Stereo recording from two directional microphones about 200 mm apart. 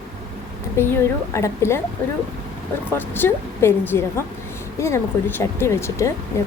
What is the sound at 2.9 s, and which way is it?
A woman's voice, 10° left (ahead or behind).